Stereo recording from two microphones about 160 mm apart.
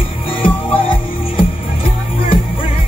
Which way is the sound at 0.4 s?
30° left (ahead or behind).